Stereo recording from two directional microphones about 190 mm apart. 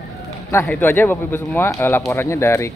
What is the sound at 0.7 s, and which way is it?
Speech, 10° left (ahead or behind).